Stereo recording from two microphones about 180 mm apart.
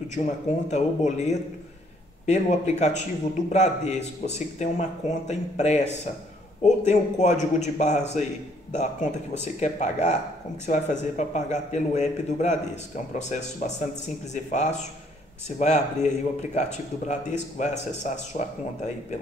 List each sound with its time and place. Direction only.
0.2 s speech: 50° left (ahead or behind)
0.7 s a man's voice: 40° left (ahead or behind)